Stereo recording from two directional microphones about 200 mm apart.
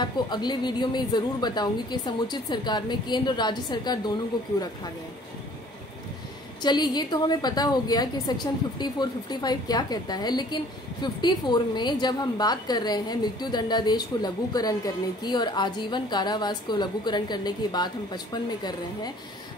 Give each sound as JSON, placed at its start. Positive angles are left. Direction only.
{"t": 0.0, "sound": "a woman's voice", "side_deg": 20}
{"t": 6.6, "sound": "a woman's voice", "side_deg": 20}